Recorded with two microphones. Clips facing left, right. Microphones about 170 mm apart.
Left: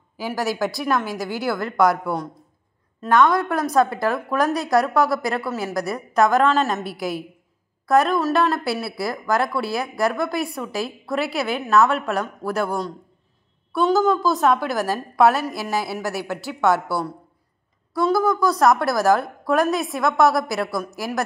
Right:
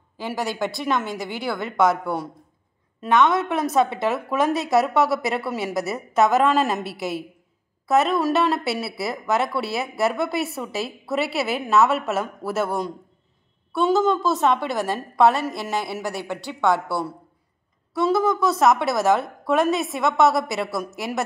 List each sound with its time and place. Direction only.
0.4 s speech: centre (ahead or behind)
3.0 s a woman's voice: 20° right (ahead or behind)
3.6 s speech: centre (ahead or behind)